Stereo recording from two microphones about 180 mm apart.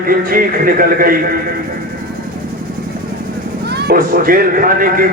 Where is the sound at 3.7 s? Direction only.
55° right (ahead or behind).